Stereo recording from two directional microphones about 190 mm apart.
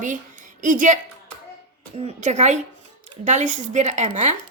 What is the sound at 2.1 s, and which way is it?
A woman's voice, 40° right (ahead or behind).